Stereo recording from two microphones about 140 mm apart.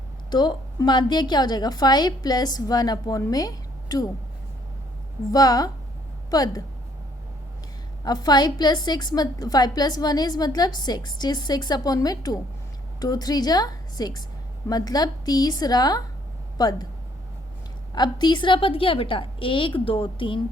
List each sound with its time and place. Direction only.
0.3 s a woman's voice: 30° left (ahead or behind)
5.3 s a woman's voice: 25° left (ahead or behind)
8.0 s a woman's voice: 30° left (ahead or behind)
17.9 s a woman's voice: 30° left (ahead or behind)